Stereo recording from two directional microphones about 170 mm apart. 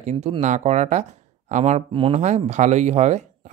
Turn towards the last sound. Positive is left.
turn(degrees=-45)  # may be behind; listen again after turning